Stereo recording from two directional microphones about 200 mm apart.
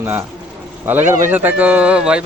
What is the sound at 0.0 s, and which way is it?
Speech, 10° right (ahead or behind).